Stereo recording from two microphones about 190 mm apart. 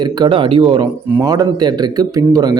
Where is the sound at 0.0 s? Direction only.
20° right (ahead or behind).